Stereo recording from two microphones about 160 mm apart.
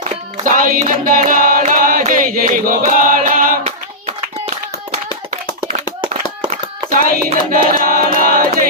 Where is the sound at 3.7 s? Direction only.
40° right (ahead or behind).